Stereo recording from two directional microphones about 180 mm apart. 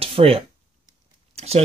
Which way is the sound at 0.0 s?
30° right (ahead or behind).